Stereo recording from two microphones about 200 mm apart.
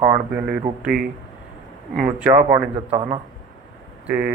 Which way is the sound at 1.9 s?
10° right (ahead or behind).